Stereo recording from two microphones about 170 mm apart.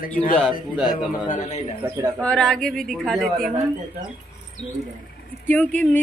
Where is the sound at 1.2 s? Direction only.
45° left (ahead or behind).